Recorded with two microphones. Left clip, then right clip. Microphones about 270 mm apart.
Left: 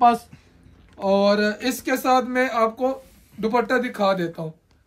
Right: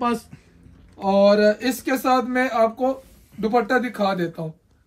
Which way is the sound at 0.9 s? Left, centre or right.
Centre.